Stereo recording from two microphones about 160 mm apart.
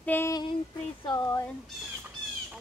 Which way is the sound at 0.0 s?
10° left (ahead or behind).